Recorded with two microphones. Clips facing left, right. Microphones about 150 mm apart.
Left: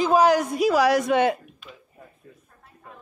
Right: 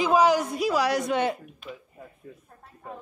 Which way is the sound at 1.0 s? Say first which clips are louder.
Left 5 dB; 70° left (ahead or behind).